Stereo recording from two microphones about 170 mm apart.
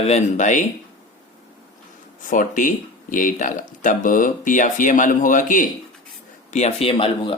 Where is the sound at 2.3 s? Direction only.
50° left (ahead or behind).